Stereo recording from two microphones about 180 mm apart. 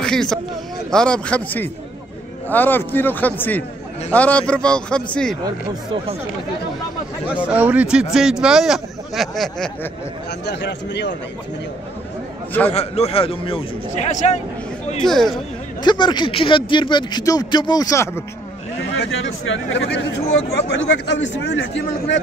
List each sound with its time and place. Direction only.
0.0 s a man's voice: 5° left (ahead or behind)
7.2 s speech: 5° right (ahead or behind)
10.4 s a man's voice: 70° left (ahead or behind)
12.7 s a man's voice: 35° left (ahead or behind)
15.0 s speech: centre (ahead or behind)
15.8 s speech: 25° left (ahead or behind)
18.9 s speech: 90° left
21.1 s a man's voice: 75° left (ahead or behind)